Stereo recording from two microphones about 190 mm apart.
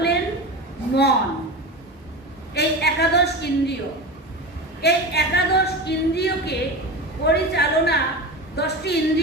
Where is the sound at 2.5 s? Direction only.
60° left (ahead or behind).